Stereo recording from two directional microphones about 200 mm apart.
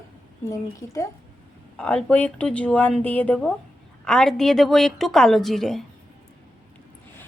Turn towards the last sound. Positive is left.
turn(degrees=0)  # may be behind; listen again after turning